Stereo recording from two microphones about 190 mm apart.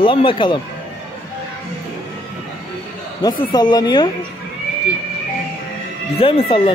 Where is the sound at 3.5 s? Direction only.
20° left (ahead or behind).